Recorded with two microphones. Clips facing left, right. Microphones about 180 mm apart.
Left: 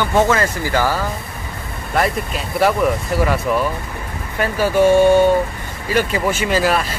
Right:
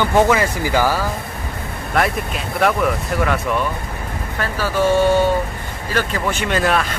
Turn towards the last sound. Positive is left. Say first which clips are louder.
# left 1 dB
turn(degrees=5)  # may be behind; listen again after turning